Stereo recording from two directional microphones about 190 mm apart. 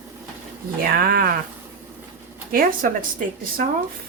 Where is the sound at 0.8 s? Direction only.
50° right (ahead or behind).